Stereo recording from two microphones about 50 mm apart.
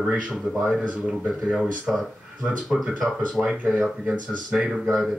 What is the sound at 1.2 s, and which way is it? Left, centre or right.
Speech, right.